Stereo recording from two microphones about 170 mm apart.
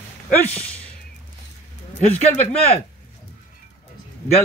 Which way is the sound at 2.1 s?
40° left (ahead or behind).